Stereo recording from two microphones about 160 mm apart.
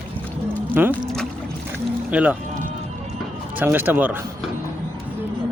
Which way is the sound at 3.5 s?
10° right (ahead or behind).